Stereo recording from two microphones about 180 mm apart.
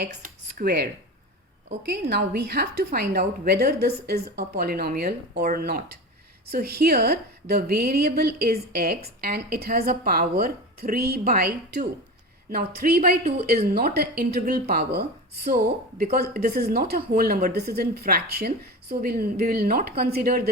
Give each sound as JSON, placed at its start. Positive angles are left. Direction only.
{"t": 0.0, "sound": "a woman's voice", "side_deg": -60}